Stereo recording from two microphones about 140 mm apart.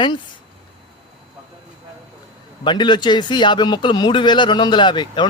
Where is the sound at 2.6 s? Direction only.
35° left (ahead or behind).